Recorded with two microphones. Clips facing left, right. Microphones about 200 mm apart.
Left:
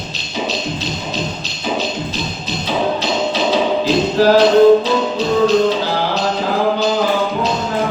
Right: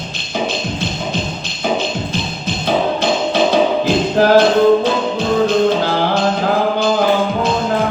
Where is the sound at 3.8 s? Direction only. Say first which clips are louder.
Even; 50° right (ahead or behind).